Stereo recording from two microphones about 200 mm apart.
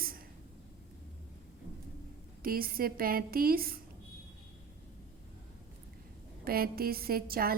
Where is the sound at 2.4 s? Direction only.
45° right (ahead or behind).